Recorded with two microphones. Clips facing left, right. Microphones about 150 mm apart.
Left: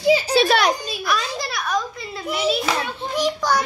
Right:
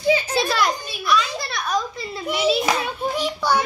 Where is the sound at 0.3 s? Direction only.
80° left.